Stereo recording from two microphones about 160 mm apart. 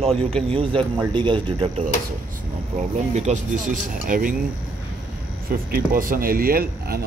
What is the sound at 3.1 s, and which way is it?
Speech, 50° right (ahead or behind).